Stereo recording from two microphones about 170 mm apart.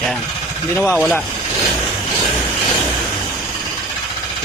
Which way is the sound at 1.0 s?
5° left (ahead or behind).